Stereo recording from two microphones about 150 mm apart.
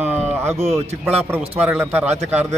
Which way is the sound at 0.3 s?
15° right (ahead or behind).